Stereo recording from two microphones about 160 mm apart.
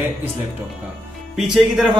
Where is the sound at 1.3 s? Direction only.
Centre (ahead or behind).